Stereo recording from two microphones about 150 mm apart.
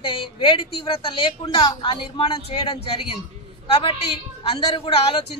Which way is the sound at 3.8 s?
40° left (ahead or behind).